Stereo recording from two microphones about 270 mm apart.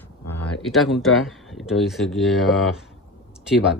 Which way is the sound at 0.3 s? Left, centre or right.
Left.